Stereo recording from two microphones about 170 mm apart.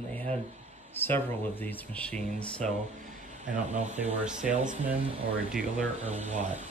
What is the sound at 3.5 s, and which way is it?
Speech, 45° right (ahead or behind).